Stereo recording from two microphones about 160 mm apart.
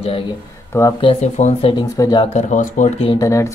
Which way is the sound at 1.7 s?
25° left (ahead or behind).